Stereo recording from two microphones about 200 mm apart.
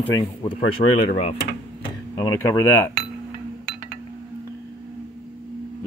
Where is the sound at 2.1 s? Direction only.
20° left (ahead or behind).